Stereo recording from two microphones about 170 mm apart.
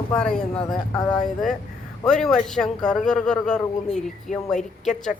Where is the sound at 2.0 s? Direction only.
5° left (ahead or behind).